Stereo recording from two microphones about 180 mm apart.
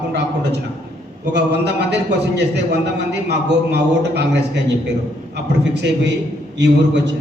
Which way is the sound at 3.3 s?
65° right (ahead or behind).